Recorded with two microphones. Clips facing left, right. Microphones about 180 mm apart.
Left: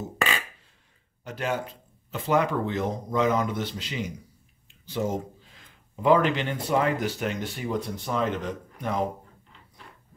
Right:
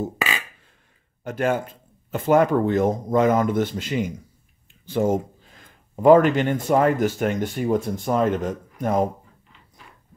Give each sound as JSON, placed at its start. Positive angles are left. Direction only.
{"t": 1.2, "sound": "speech", "side_deg": -50}